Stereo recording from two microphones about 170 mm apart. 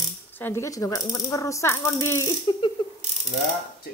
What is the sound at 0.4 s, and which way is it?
A woman's voice, 15° left (ahead or behind).